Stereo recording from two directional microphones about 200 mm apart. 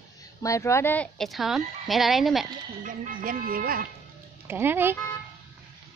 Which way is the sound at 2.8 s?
45° right (ahead or behind).